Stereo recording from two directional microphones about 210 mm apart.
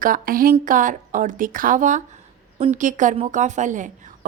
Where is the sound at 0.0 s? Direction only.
40° right (ahead or behind).